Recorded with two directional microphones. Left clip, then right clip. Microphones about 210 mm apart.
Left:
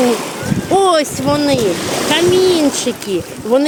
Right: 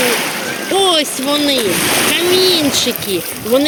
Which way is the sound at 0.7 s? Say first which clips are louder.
Left 2 dB; 15° left (ahead or behind).